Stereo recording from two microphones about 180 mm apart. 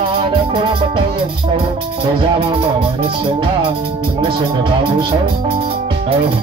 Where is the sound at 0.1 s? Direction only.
30° right (ahead or behind).